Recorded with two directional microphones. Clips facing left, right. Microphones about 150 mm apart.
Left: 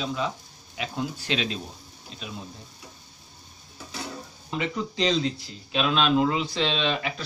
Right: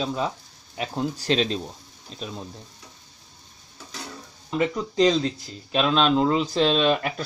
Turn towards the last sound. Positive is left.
turn(degrees=-50)  # may be behind; listen again after turning